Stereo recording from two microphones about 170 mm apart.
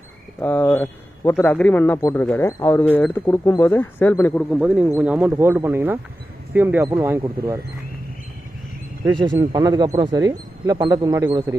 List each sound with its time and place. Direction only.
0.4 s speech: 10° left (ahead or behind); by 7.2 s 15° right (ahead or behind)
7.2 s speech: 25° right (ahead or behind)
9.2 s speech: 25° right (ahead or behind)